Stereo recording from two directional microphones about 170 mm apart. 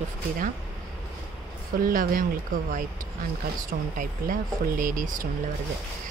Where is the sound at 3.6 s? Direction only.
50° right (ahead or behind).